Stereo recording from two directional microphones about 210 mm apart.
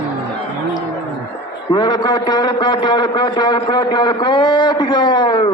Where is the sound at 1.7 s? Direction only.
20° left (ahead or behind).